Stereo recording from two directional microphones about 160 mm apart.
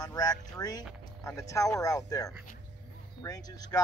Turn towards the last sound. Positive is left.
turn(degrees=25)  # may be behind; listen again after turning